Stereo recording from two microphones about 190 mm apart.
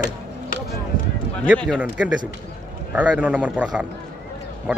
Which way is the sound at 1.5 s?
5° left (ahead or behind).